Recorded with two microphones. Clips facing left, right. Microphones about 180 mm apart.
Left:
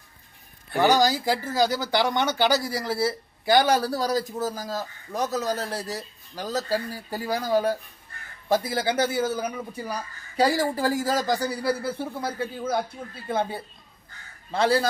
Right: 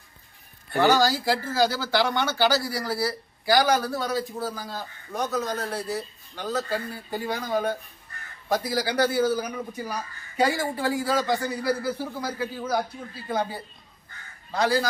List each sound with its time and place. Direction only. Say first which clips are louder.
0.8 s a man's voice: even; 15° left (ahead or behind)
10.3 s a man's voice: left 2 dB; 35° left (ahead or behind)
14.5 s speech: left 2 dB; 30° left (ahead or behind)